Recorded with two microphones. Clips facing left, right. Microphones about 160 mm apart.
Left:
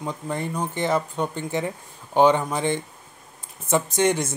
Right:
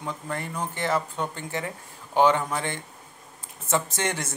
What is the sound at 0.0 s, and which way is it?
Speech, 20° left (ahead or behind).